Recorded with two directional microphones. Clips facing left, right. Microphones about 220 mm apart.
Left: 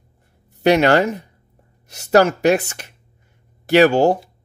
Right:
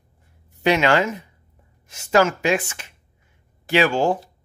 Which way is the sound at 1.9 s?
40° left (ahead or behind).